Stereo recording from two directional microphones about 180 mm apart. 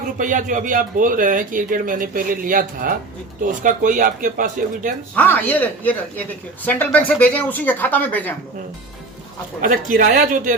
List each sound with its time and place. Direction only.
0.2 s speech: 45° right (ahead or behind)
5.1 s speech: 10° left (ahead or behind)
9.6 s speech: 50° right (ahead or behind)